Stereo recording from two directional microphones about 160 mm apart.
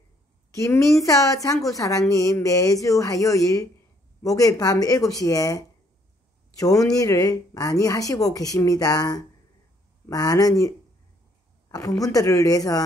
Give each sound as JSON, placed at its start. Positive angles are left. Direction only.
{"t": 0.6, "sound": "speech", "side_deg": 20}
{"t": 6.6, "sound": "speech", "side_deg": 20}
{"t": 11.7, "sound": "speech", "side_deg": 20}